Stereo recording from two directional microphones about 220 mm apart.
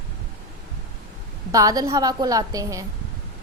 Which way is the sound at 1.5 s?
15° right (ahead or behind).